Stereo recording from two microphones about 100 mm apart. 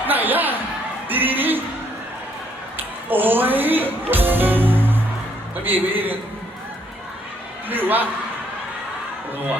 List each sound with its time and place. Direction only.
0.0 s a sound: 20° right (ahead or behind)
3.1 s a man's voice: 20° right (ahead or behind)
7.7 s a man's voice: 20° right (ahead or behind)